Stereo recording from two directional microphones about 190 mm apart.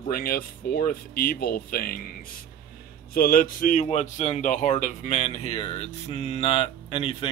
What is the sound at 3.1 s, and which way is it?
A man's voice, 50° left (ahead or behind).